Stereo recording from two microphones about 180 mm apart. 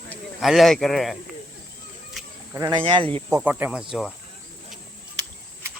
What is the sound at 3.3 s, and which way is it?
Speech, 10° right (ahead or behind).